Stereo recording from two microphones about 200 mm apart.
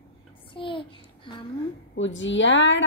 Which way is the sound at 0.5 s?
25° left (ahead or behind).